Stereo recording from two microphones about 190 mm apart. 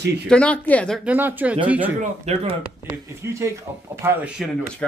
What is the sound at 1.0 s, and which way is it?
Speech, 10° right (ahead or behind).